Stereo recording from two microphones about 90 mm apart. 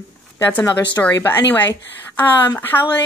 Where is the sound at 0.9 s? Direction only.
25° left (ahead or behind).